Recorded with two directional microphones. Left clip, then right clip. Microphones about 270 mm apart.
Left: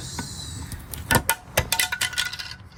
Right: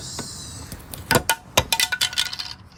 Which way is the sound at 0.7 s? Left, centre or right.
Centre.